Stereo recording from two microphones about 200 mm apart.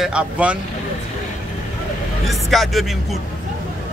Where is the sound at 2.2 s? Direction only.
Centre (ahead or behind).